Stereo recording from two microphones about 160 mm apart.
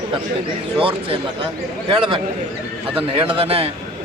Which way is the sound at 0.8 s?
35° right (ahead or behind).